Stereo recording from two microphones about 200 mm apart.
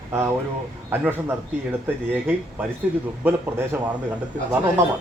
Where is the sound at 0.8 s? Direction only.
10° right (ahead or behind).